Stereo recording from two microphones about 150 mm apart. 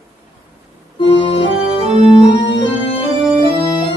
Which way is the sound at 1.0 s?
35° left (ahead or behind).